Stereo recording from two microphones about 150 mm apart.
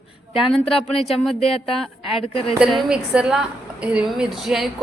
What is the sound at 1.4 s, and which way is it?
Speech, 40° left (ahead or behind).